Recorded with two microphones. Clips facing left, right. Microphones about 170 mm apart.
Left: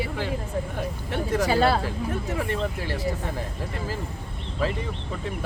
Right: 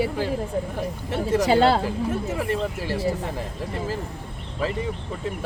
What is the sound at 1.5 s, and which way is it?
Speech, 25° right (ahead or behind).